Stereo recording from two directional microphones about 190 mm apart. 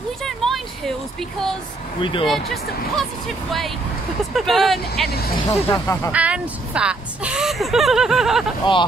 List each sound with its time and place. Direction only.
0.2 s a sound: centre (ahead or behind)
2.0 s speech: 25° left (ahead or behind)
2.2 s speech: centre (ahead or behind)
4.3 s speech: centre (ahead or behind)
5.1 s speech: 55° left (ahead or behind)
5.5 s speech: 15° left (ahead or behind)
6.1 s speech: 5° right (ahead or behind)